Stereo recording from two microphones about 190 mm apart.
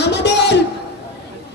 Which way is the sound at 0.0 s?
65° left (ahead or behind).